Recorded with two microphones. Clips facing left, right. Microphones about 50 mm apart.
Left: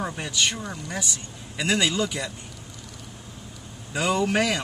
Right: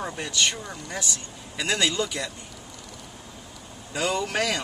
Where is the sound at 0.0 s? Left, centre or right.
Centre.